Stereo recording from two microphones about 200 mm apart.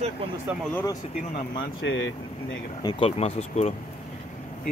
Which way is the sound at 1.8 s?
70° left (ahead or behind).